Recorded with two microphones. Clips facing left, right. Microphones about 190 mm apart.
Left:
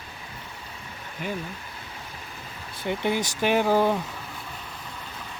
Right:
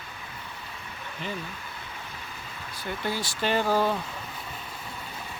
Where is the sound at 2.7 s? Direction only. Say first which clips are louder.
Left 6 dB; 20° left (ahead or behind).